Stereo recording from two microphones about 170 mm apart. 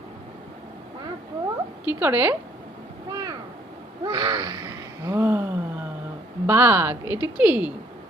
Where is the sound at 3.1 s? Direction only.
25° right (ahead or behind).